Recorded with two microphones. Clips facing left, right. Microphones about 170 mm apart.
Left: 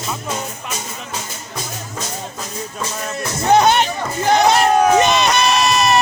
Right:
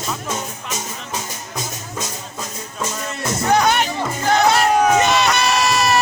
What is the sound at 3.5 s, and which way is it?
Music, 25° left (ahead or behind).